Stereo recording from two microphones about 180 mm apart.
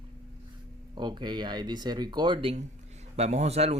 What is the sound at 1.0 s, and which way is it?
Speech, 25° right (ahead or behind).